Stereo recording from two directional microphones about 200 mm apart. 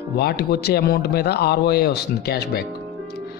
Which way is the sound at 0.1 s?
55° left (ahead or behind).